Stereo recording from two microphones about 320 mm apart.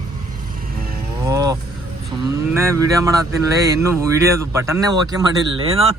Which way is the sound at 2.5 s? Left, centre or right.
Centre.